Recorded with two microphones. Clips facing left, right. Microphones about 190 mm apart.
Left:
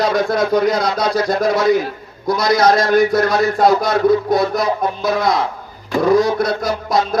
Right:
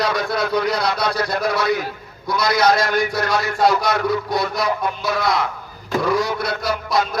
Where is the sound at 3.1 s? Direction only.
50° left (ahead or behind).